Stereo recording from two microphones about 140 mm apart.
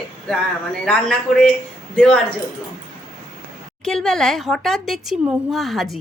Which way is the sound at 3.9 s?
5° left (ahead or behind).